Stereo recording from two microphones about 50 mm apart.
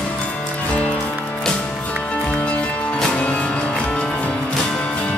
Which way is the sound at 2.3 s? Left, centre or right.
Left.